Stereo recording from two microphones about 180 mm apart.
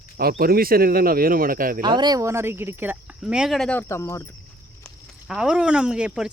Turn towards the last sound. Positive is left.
turn(degrees=-5)  # may be behind; listen again after turning